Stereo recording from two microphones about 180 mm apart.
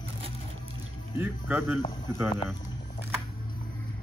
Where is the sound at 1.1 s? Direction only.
5° right (ahead or behind).